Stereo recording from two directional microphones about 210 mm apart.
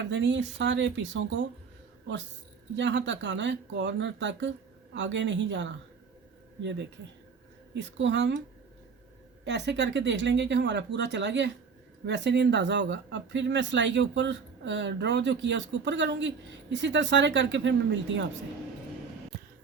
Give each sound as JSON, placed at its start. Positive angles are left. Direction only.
{"t": 0.0, "sound": "speech", "side_deg": -60}
{"t": 2.7, "sound": "speech", "side_deg": -60}
{"t": 9.4, "sound": "speech", "side_deg": -55}